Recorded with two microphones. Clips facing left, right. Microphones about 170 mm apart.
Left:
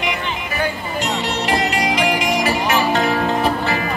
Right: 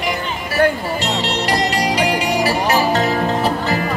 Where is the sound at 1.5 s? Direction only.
40° right (ahead or behind).